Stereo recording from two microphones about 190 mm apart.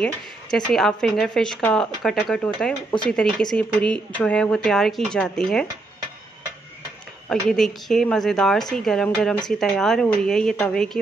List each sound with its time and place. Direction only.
0.0 s speech: 5° left (ahead or behind)
7.2 s speech: centre (ahead or behind)